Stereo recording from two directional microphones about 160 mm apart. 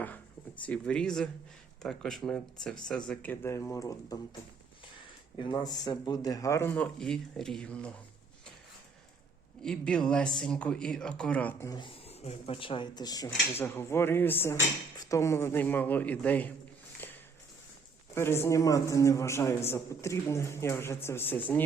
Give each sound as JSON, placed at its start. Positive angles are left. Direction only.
{"t": 0.6, "sound": "a man's voice", "side_deg": 5}
{"t": 5.4, "sound": "a man's voice", "side_deg": 30}
{"t": 9.6, "sound": "speech", "side_deg": 5}
{"t": 11.7, "sound": "speech", "side_deg": 30}
{"t": 13.5, "sound": "a man's voice", "side_deg": 15}
{"t": 17.0, "sound": "a sound", "side_deg": 10}
{"t": 18.1, "sound": "a man's voice", "side_deg": 15}